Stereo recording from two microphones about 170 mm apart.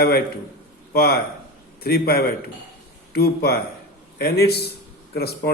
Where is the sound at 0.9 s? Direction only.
60° left (ahead or behind).